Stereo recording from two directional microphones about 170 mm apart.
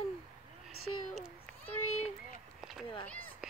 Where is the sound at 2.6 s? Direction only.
Centre (ahead or behind).